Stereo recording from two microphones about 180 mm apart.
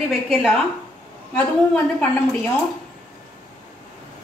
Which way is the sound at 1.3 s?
10° left (ahead or behind).